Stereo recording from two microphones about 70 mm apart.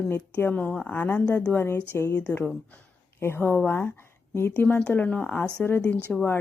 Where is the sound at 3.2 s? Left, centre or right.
Left.